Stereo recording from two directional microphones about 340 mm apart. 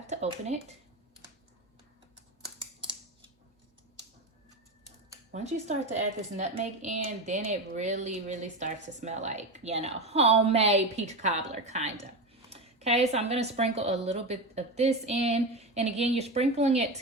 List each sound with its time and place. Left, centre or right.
0.1 s speech: centre
5.3 s a woman's voice: centre